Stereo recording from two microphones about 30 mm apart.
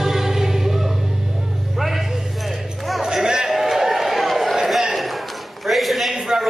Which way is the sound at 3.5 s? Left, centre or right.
Centre.